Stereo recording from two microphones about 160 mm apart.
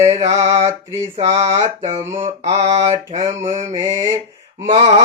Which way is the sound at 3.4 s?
45° right (ahead or behind).